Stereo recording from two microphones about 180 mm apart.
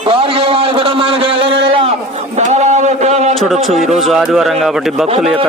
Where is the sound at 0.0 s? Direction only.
30° right (ahead or behind).